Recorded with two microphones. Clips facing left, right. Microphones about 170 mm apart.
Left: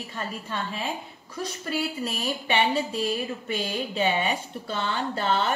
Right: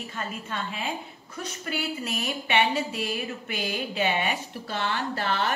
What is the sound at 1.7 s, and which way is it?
Speech, 30° left (ahead or behind).